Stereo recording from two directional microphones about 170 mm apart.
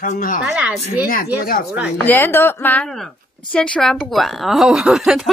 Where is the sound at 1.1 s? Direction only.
60° left (ahead or behind).